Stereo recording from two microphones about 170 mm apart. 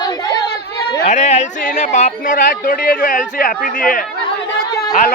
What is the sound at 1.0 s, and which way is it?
A man's voice, 45° left (ahead or behind).